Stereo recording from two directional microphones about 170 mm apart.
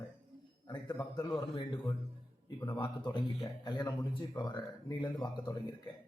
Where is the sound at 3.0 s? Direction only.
25° left (ahead or behind).